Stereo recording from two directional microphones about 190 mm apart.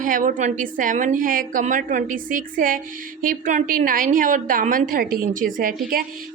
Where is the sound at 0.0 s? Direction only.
45° right (ahead or behind).